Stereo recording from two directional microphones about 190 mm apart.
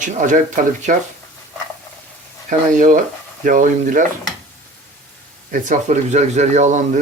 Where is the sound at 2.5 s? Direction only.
40° right (ahead or behind).